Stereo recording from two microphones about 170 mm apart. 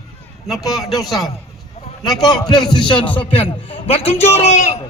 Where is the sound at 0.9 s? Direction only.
Centre (ahead or behind).